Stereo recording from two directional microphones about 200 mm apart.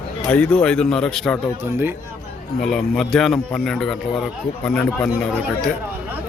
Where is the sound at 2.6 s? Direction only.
5° left (ahead or behind).